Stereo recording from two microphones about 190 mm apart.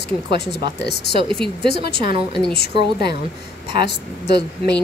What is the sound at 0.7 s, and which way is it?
Speech, 60° left (ahead or behind).